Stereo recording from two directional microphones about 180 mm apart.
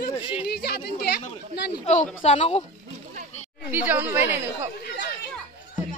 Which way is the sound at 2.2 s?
35° left (ahead or behind).